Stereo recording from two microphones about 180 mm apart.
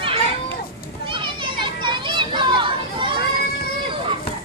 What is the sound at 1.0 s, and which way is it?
Children playing, 25° right (ahead or behind).